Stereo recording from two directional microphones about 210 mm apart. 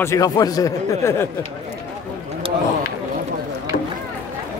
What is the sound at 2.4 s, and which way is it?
Run, 25° right (ahead or behind).